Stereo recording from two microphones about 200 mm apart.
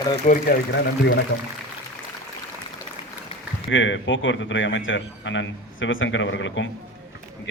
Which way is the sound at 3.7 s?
70° left (ahead or behind).